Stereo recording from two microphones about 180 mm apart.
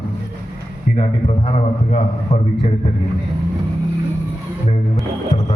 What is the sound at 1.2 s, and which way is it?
Speech, 35° left (ahead or behind).